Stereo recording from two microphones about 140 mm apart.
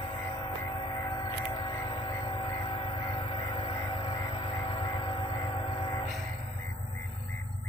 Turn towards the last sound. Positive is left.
turn(degrees=40)  # may be behind; listen again after turning